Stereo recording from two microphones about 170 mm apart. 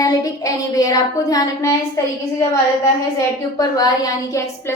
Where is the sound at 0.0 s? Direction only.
20° left (ahead or behind).